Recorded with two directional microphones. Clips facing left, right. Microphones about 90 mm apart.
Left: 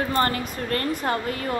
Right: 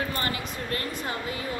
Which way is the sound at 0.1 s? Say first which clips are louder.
Left 7 dB; 45° left (ahead or behind).